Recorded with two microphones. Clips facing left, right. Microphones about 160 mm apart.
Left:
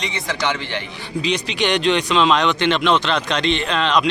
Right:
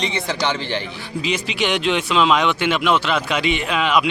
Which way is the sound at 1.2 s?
5° right (ahead or behind).